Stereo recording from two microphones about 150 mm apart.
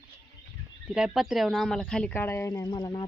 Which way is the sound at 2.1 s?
15° left (ahead or behind).